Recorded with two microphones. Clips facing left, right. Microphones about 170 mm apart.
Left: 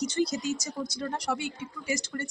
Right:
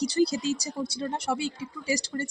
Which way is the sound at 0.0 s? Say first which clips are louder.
Right 4 dB; 35° right (ahead or behind).